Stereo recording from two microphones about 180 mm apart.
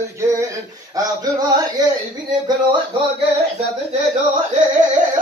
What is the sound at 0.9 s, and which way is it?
Speech, 20° right (ahead or behind).